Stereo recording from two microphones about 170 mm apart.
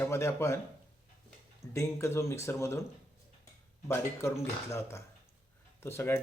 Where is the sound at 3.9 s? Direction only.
15° left (ahead or behind).